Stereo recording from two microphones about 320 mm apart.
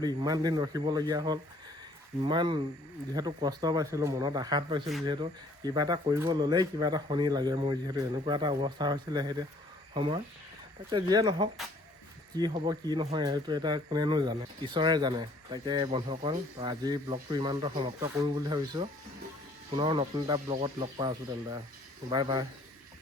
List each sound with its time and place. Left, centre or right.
0.0 s speech: centre